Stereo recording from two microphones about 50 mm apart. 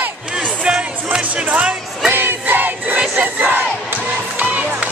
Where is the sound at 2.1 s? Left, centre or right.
Right.